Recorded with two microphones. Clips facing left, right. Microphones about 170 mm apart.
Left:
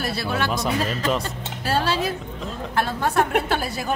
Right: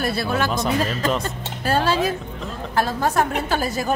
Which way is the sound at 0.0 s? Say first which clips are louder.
Right 3 dB; 50° right (ahead or behind).